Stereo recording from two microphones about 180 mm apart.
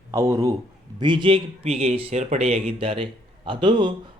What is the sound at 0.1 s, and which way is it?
A man's voice, 15° right (ahead or behind).